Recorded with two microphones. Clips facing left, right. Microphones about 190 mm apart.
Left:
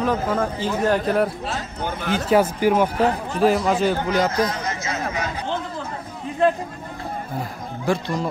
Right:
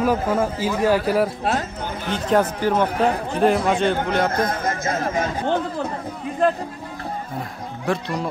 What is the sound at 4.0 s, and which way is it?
Chatter, 55° right (ahead or behind).